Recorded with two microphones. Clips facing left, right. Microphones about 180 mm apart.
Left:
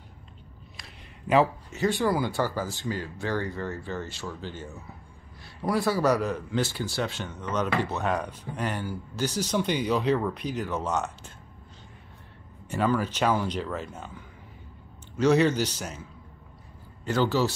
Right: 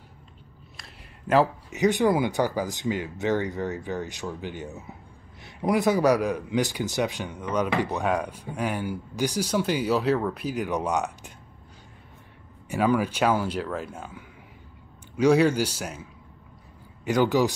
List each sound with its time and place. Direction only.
0.7 s a sound: centre (ahead or behind)
1.7 s a man's voice: 20° right (ahead or behind)
12.6 s a man's voice: 10° right (ahead or behind)